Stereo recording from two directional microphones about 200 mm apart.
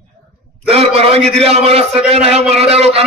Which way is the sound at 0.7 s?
30° right (ahead or behind).